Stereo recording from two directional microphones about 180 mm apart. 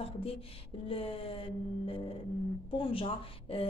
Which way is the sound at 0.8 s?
30° left (ahead or behind).